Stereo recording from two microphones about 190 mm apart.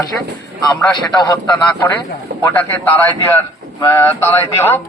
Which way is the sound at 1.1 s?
20° left (ahead or behind).